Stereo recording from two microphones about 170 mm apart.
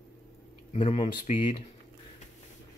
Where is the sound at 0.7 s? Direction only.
35° left (ahead or behind).